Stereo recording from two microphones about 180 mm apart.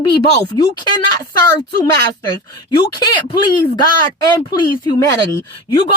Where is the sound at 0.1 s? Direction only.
25° left (ahead or behind).